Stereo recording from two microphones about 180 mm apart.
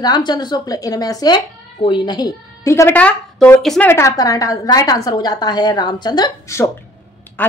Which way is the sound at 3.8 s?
15° left (ahead or behind).